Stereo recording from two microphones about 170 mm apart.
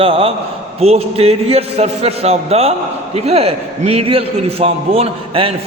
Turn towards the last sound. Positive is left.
turn(degrees=-35)  # may be behind; listen again after turning